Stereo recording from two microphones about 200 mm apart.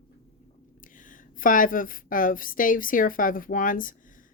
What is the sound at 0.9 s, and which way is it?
A woman's voice, 40° left (ahead or behind).